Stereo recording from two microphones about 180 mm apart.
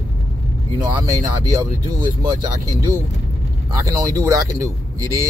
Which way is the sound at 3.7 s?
20° right (ahead or behind).